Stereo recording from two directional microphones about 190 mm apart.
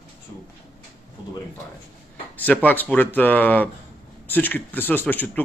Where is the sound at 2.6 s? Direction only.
10° left (ahead or behind).